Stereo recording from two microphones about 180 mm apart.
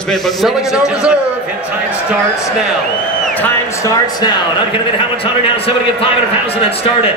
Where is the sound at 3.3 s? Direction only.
15° left (ahead or behind).